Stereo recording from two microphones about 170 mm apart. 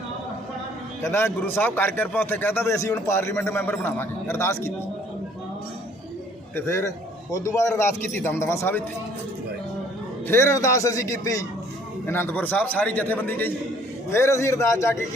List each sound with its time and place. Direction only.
1.0 s a man's voice: 15° left (ahead or behind)
6.6 s a man's voice: 15° left (ahead or behind)
10.2 s a man's voice: 15° left (ahead or behind)